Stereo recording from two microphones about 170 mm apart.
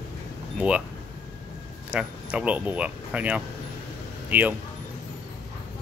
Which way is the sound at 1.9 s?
10° right (ahead or behind).